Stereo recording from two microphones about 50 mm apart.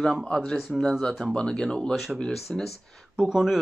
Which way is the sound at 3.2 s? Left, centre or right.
Centre.